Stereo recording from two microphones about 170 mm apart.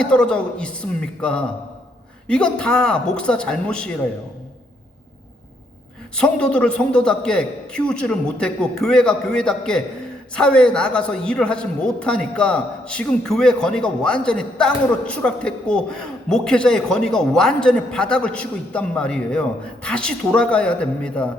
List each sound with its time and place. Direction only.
0.0 s a man's voice: 5° left (ahead or behind)
6.1 s a man's voice: 5° left (ahead or behind)